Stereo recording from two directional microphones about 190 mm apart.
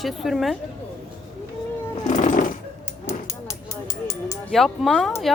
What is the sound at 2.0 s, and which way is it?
Jackhammer, 40° left (ahead or behind).